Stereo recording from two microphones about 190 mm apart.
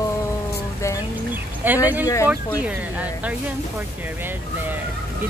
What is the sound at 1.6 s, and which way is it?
Speech, 10° right (ahead or behind).